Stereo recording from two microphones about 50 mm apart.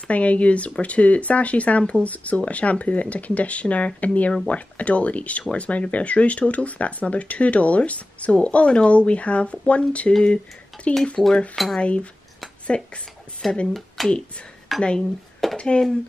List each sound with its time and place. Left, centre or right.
0.1 s speech: left
11.2 s speech: centre
11.8 s speech: left
13.4 s speech: centre
14.8 s speech: centre